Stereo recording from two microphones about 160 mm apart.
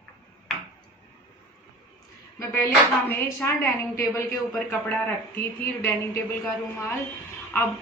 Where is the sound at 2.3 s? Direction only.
15° left (ahead or behind).